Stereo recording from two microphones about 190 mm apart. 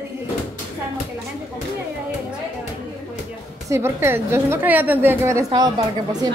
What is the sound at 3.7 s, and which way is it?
A woman's voice, 15° right (ahead or behind).